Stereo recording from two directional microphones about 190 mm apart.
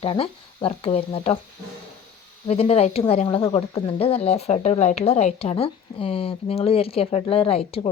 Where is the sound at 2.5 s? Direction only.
35° left (ahead or behind).